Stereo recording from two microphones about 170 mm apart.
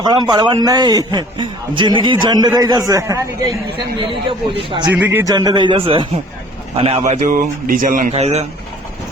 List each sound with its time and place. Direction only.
0.0 s a man's voice: 25° right (ahead or behind)
3.8 s a man's voice: 30° right (ahead or behind)
4.9 s a man's voice: 10° right (ahead or behind); by 8.1 s 50° right (ahead or behind)
8.1 s speech: 40° right (ahead or behind)